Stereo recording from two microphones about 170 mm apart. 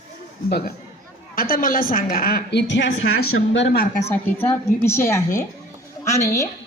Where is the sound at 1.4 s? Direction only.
55° left (ahead or behind); by 3.1 s 90° left.